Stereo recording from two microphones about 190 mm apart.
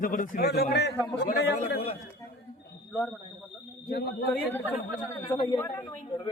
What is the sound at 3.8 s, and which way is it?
Speech, 60° left (ahead or behind).